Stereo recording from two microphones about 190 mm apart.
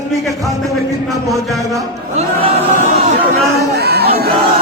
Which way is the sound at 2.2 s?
40° right (ahead or behind).